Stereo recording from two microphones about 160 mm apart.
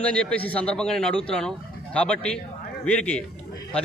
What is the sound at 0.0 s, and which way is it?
A man's voice, 10° left (ahead or behind).